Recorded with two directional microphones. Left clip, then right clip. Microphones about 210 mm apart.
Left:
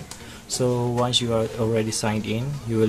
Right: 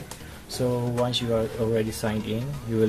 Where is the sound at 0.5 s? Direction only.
20° left (ahead or behind).